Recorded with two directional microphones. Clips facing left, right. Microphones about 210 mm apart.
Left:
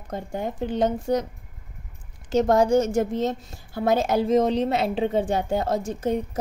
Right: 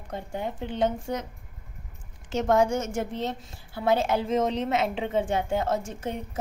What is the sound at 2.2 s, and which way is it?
A woman's voice, 35° left (ahead or behind).